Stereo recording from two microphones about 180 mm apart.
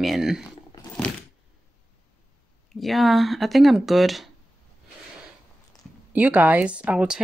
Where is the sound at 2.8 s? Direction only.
Centre (ahead or behind).